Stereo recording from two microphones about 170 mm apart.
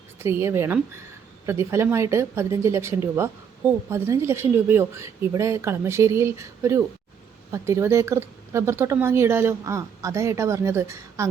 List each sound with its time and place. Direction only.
0.2 s a woman's voice: 15° right (ahead or behind)